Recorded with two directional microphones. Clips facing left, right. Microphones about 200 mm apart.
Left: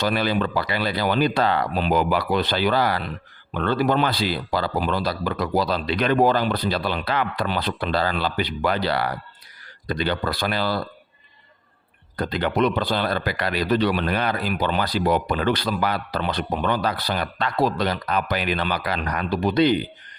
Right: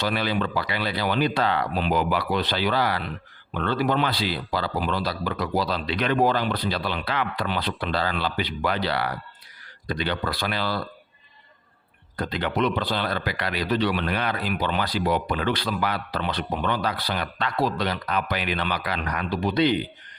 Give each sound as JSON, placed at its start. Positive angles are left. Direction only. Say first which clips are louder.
{"t": 0.0, "sound": "a man's voice", "louder": "left 3 dB", "side_deg": 45}
{"t": 12.1, "sound": "a man's voice", "louder": "left 3 dB", "side_deg": 40}